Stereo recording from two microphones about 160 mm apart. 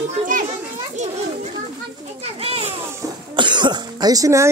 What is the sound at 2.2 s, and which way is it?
Children playing, 40° right (ahead or behind).